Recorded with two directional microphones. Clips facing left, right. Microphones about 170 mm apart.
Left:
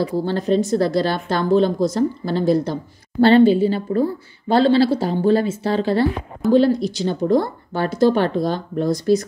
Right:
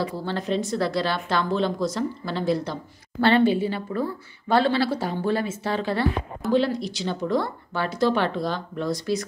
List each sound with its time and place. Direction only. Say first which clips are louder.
0.0 s speech: left 7 dB; 40° left (ahead or behind)